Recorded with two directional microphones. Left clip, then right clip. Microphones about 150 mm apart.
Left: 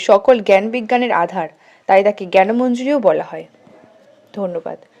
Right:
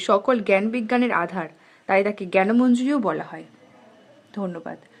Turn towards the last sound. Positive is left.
turn(degrees=15)  # may be behind; listen again after turning